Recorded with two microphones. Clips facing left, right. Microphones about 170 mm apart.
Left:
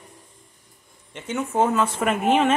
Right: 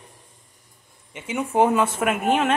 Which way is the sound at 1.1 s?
5° right (ahead or behind).